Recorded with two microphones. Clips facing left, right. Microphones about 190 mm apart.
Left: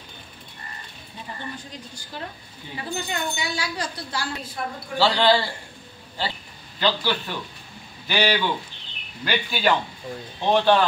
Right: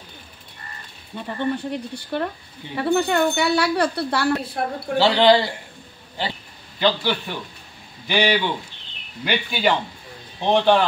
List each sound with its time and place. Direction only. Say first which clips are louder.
1.1 s speech: right 11 dB; 60° right (ahead or behind)
4.9 s speech: right 4 dB; 20° right (ahead or behind)
6.8 s speech: right 3 dB; 15° right (ahead or behind)